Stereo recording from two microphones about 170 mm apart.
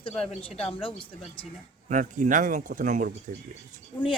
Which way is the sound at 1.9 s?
50° right (ahead or behind).